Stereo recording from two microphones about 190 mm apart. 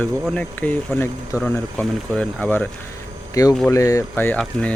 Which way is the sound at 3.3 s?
20° left (ahead or behind).